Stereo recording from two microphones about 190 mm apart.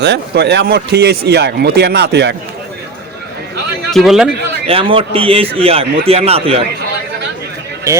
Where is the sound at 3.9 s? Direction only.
Centre (ahead or behind).